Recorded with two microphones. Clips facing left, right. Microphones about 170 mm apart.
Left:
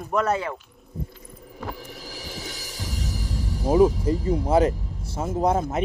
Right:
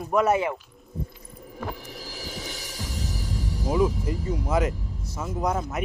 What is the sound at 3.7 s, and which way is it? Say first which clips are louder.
Speech: left 6 dB; 30° left (ahead or behind).